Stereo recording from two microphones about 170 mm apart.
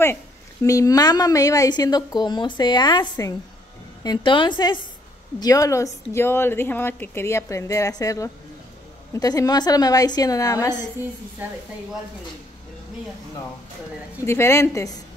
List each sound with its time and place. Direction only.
0.7 s a woman's voice: 20° left (ahead or behind)
14.2 s a woman's voice: 15° left (ahead or behind)